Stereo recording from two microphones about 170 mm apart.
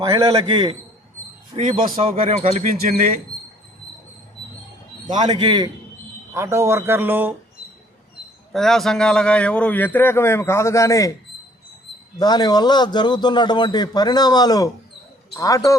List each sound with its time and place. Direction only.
0.1 s a man's voice: 20° right (ahead or behind)
1.5 s speech: 50° right (ahead or behind)
2.0 s speech: 35° right (ahead or behind)
5.0 s speech: 45° right (ahead or behind)
5.3 s a man's voice: 30° right (ahead or behind)
6.3 s a man's voice: 15° right (ahead or behind)
8.5 s a man's voice: centre (ahead or behind); by 11.1 s 20° left (ahead or behind)
12.2 s a man's voice: 25° left (ahead or behind)